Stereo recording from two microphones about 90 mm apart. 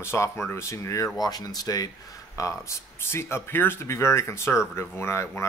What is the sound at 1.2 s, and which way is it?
Speech, 45° left (ahead or behind).